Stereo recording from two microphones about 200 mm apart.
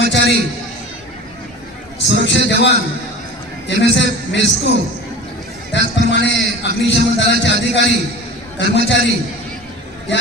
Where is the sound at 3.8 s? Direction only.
65° left (ahead or behind).